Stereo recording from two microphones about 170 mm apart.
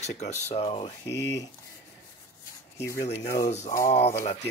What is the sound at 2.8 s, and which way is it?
Speech, 15° left (ahead or behind).